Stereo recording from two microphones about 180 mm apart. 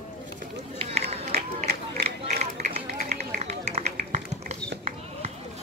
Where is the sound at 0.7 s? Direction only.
35° right (ahead or behind).